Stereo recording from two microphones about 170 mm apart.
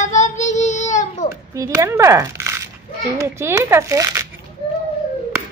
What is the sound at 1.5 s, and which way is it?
Speech, 20° right (ahead or behind).